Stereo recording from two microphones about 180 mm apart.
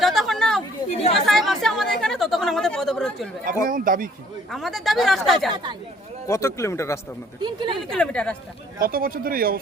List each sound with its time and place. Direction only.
0.0 s chatter: centre (ahead or behind)
0.9 s chatter: 35° left (ahead or behind)
1.3 s chatter: centre (ahead or behind)
3.7 s speech: 50° right (ahead or behind)
4.5 s speech: centre (ahead or behind)
6.2 s speech: 15° left (ahead or behind)
7.4 s speech: 25° right (ahead or behind)
7.9 s speech: 5° left (ahead or behind)
8.8 s speech: 55° right (ahead or behind)